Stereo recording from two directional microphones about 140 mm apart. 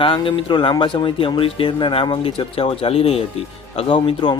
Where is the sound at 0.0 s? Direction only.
40° left (ahead or behind).